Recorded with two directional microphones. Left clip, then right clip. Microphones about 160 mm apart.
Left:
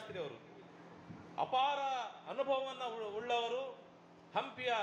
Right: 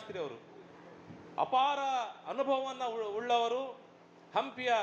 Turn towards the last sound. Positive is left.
turn(degrees=-30)  # may be behind; listen again after turning